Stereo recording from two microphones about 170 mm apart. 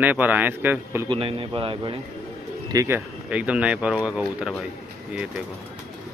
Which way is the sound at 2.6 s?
15° right (ahead or behind).